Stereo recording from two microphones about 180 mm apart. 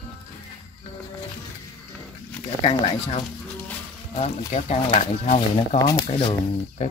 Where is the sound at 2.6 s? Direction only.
30° left (ahead or behind).